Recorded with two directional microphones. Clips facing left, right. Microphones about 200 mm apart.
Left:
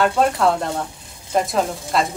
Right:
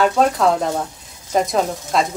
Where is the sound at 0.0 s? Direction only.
Centre (ahead or behind).